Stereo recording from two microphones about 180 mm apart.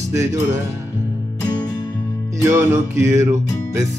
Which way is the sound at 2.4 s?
15° right (ahead or behind).